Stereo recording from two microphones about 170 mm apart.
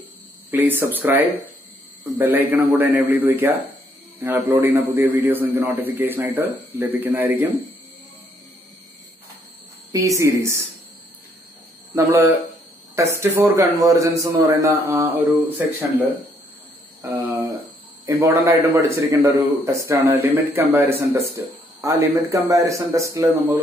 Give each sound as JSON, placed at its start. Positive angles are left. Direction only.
{"t": 0.5, "sound": "a man's voice", "side_deg": -10}
{"t": 9.9, "sound": "a man's voice", "side_deg": -20}
{"t": 11.9, "sound": "a man's voice", "side_deg": -15}
{"t": 17.0, "sound": "cricket", "side_deg": -15}
{"t": 18.0, "sound": "a man's voice", "side_deg": -20}